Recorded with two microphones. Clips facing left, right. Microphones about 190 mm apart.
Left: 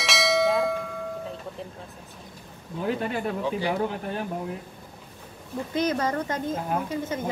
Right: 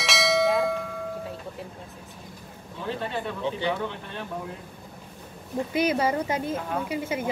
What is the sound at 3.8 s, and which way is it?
Speech, 40° left (ahead or behind).